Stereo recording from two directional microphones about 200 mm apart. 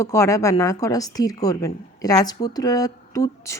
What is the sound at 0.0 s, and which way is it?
A woman's voice, 15° left (ahead or behind).